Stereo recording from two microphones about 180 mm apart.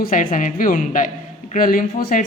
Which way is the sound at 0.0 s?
50° left (ahead or behind).